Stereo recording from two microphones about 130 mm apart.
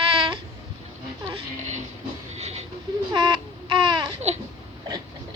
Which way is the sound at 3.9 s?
35° right (ahead or behind).